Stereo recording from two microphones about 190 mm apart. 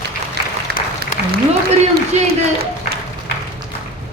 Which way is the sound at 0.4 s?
60° right (ahead or behind).